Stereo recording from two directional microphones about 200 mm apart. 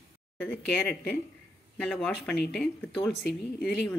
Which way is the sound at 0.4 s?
5° left (ahead or behind).